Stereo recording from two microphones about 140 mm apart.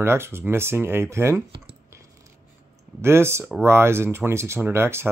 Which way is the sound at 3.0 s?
20° right (ahead or behind).